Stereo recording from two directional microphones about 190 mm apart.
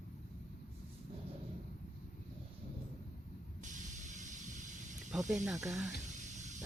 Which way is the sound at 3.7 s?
40° right (ahead or behind).